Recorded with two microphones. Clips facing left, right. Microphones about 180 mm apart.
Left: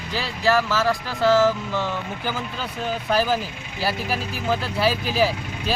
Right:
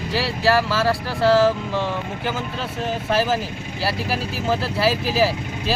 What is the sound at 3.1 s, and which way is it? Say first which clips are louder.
Speech: even; centre (ahead or behind).